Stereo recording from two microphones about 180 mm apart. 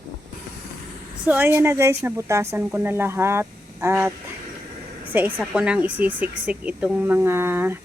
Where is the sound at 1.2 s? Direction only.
10° right (ahead or behind).